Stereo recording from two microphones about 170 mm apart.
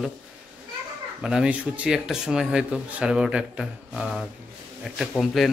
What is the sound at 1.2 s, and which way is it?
Speech, 5° right (ahead or behind).